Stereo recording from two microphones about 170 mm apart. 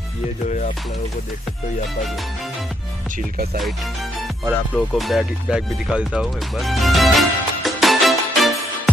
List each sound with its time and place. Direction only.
0.5 s music: 50° left (ahead or behind)
4.7 s speech: centre (ahead or behind)